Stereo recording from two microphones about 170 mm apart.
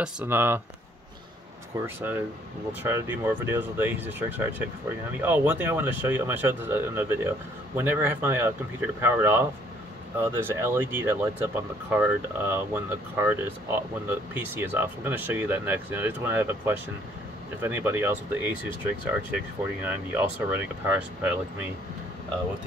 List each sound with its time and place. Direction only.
0.0 s speech: 10° right (ahead or behind)
1.7 s speech: 20° right (ahead or behind)
19.8 s speech: 10° right (ahead or behind)